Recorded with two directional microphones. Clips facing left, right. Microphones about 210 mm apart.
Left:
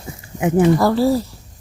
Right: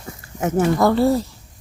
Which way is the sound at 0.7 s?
Centre (ahead or behind).